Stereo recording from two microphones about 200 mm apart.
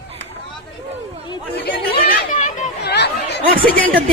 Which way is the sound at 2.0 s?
45° left (ahead or behind).